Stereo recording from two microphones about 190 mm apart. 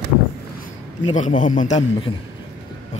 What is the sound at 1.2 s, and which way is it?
Speech, 40° left (ahead or behind).